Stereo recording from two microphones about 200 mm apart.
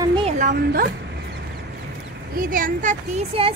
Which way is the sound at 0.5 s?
50° right (ahead or behind).